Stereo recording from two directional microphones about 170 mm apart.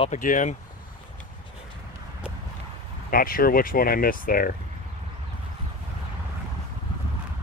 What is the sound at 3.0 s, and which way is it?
Speech, 60° left (ahead or behind).